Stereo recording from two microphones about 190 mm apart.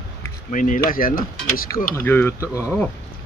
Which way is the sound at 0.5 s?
45° left (ahead or behind).